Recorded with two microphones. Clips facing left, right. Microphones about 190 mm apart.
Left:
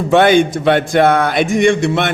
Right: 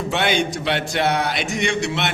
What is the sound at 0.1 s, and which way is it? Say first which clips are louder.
A man's voice: left 12 dB; 50° left (ahead or behind).